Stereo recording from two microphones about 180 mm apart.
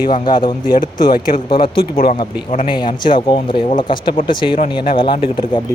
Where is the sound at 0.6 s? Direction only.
50° left (ahead or behind).